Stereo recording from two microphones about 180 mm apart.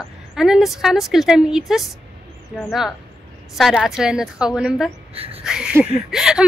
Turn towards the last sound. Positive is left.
turn(degrees=-5)  # may be behind; listen again after turning